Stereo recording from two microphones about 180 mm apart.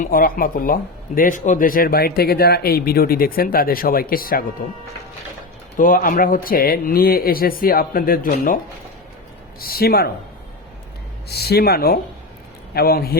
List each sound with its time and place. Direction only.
0.0 s speech: 55° left (ahead or behind)
5.7 s speech: 50° left (ahead or behind)
9.6 s speech: 55° left (ahead or behind)
11.3 s speech: 60° left (ahead or behind)